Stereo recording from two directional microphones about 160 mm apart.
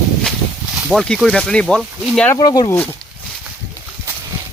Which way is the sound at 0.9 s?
Centre (ahead or behind).